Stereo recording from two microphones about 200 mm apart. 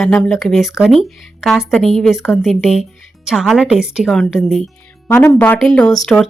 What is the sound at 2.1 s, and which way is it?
Speech, 15° left (ahead or behind).